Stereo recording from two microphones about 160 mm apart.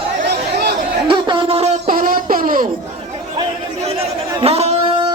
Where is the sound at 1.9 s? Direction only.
60° right (ahead or behind).